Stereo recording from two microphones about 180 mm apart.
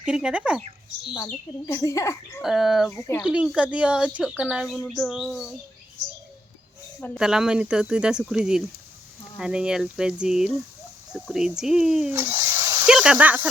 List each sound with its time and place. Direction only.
0.0 s speech: 5° right (ahead or behind)
1.1 s speech: 20° left (ahead or behind)
2.4 s speech: centre (ahead or behind)
7.2 s speech: 5° right (ahead or behind)
12.1 s a sound: 15° right (ahead or behind)
12.9 s speech: 5° right (ahead or behind)